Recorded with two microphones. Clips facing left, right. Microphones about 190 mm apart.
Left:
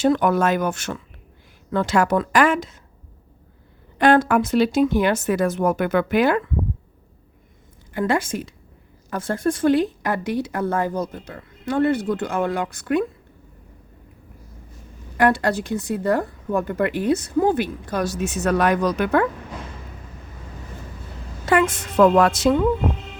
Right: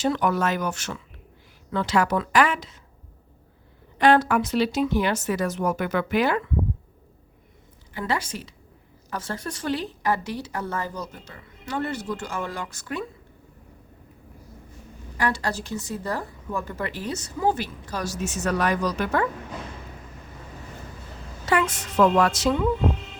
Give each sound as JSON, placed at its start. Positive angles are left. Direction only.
{"t": 0.0, "sound": "speech", "side_deg": 55}
{"t": 3.9, "sound": "speech", "side_deg": 50}
{"t": 7.9, "sound": "speech", "side_deg": 50}
{"t": 15.2, "sound": "speech", "side_deg": 55}
{"t": 21.4, "sound": "speech", "side_deg": 55}